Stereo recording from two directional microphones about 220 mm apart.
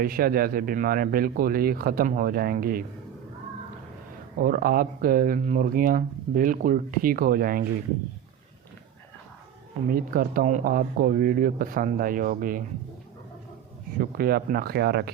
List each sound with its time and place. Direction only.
0.0 s speech: 40° right (ahead or behind)
4.4 s speech: 40° right (ahead or behind)
9.9 s speech: 40° right (ahead or behind)
14.0 s speech: 40° right (ahead or behind)